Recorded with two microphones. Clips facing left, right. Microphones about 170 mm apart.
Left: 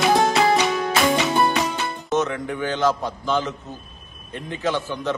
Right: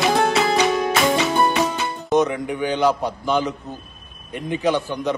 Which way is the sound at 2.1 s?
15° right (ahead or behind).